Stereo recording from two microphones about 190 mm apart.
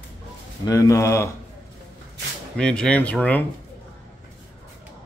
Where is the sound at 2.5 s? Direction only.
5° left (ahead or behind).